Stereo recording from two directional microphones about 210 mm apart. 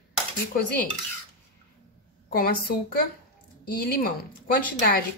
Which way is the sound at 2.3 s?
45° left (ahead or behind).